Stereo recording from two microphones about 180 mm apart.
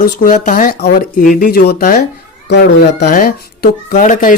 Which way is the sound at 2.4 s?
65° left (ahead or behind).